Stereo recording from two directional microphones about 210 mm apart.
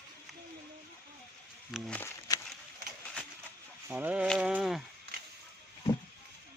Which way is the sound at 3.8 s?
10° right (ahead or behind).